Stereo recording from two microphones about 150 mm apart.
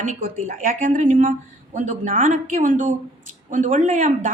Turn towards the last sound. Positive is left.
turn(degrees=-55)  # may be behind; listen again after turning